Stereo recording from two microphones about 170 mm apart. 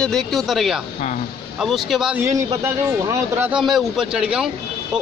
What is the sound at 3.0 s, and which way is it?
Speech, 15° right (ahead or behind).